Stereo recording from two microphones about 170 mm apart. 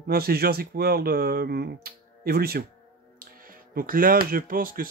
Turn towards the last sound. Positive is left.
turn(degrees=-55)  # may be behind; listen again after turning